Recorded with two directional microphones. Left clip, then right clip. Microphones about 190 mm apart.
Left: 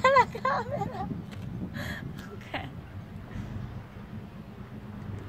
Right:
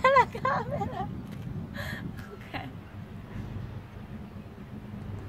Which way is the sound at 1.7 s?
30° left (ahead or behind).